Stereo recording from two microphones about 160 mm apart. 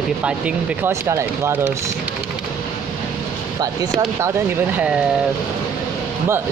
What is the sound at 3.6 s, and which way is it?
Speech, 25° right (ahead or behind).